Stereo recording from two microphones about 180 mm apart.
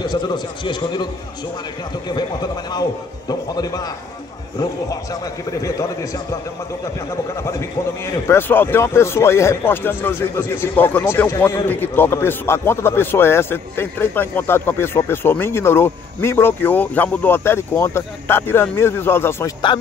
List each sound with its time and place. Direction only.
0.0 s a man's voice: 25° left (ahead or behind)
2.0 s a man's voice: 25° left (ahead or behind)
8.0 s a man's voice: 15° left (ahead or behind)